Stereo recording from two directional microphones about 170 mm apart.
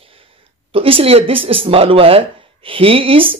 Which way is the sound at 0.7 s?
30° right (ahead or behind).